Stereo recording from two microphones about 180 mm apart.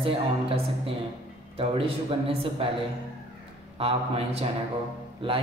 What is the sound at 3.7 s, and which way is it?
Speech, 35° right (ahead or behind).